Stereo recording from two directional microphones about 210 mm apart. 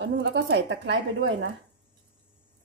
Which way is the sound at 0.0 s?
55° right (ahead or behind).